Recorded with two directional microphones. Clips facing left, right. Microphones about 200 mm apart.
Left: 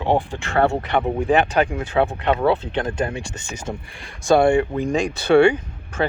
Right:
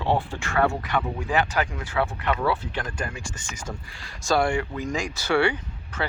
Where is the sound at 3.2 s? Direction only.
65° left (ahead or behind).